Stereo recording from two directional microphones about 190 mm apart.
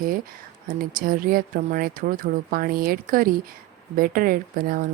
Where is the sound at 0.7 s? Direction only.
45° right (ahead or behind).